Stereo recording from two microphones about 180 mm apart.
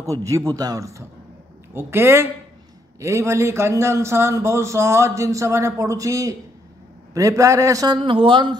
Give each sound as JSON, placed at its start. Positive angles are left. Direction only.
{"t": 0.0, "sound": "a man's voice", "side_deg": -15}